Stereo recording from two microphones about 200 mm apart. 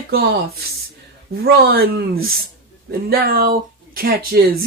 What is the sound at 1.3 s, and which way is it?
Speech, 50° right (ahead or behind).